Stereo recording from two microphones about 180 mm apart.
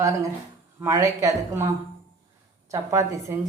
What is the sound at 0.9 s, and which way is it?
Speech, 15° right (ahead or behind).